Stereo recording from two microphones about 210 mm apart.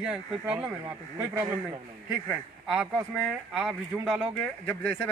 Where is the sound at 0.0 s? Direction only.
5° right (ahead or behind).